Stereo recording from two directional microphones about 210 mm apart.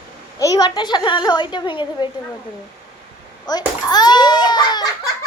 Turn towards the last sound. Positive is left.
turn(degrees=20)  # may be behind; listen again after turning